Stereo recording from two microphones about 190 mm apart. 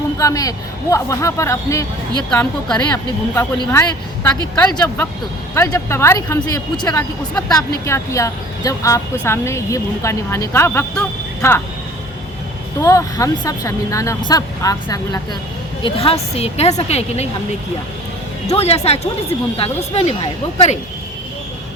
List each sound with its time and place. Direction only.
0.2 s a woman's voice: 15° left (ahead or behind)
2.8 s speech: 15° left (ahead or behind)
12.8 s speech: 15° left (ahead or behind)
15.8 s a woman's voice: 30° left (ahead or behind)
18.4 s a woman's voice: 35° left (ahead or behind)